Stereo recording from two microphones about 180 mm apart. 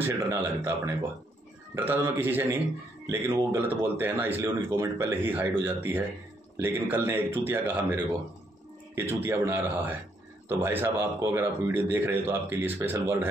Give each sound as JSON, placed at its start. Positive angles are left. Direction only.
{"t": 0.0, "sound": "speech", "side_deg": -15}